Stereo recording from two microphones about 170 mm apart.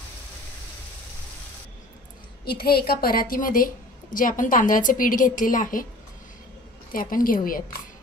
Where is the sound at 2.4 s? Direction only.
65° left (ahead or behind).